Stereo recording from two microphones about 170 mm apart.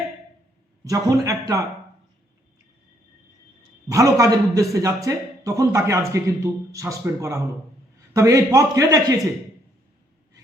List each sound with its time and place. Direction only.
0.9 s a man's voice: 20° right (ahead or behind)
3.8 s a man's voice: 20° right (ahead or behind)